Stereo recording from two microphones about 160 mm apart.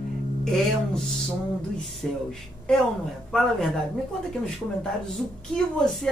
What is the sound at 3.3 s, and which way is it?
Speech, centre (ahead or behind).